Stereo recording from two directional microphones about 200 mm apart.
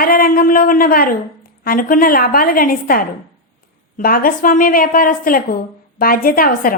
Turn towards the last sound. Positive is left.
turn(degrees=45)  # may be behind; listen again after turning